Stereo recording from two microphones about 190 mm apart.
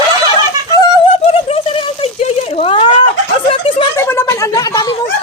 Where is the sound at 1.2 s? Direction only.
30° left (ahead or behind).